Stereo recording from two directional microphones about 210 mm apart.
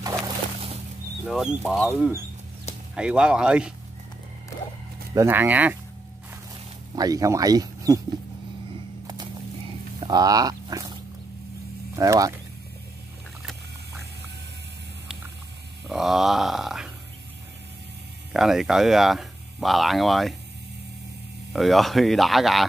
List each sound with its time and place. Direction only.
1.2 s speech: centre (ahead or behind)
5.1 s speech: 10° right (ahead or behind)
7.0 s speech: 15° right (ahead or behind)
9.0 s a sound: 20° right (ahead or behind)
9.9 s speech: 20° right (ahead or behind)
15.9 s speech: centre (ahead or behind)
18.3 s speech: centre (ahead or behind)
21.5 s speech: centre (ahead or behind)